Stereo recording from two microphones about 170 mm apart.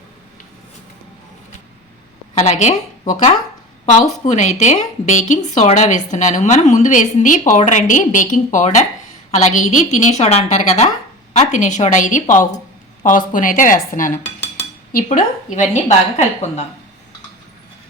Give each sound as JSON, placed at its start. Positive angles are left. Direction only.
{"t": 2.3, "sound": "a woman's voice", "side_deg": 40}
{"t": 14.4, "sound": "cutlery", "side_deg": 80}
{"t": 15.1, "sound": "a woman's voice", "side_deg": 50}